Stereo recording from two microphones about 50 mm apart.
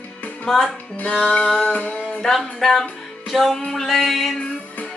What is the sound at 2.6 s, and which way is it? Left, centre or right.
Music, centre.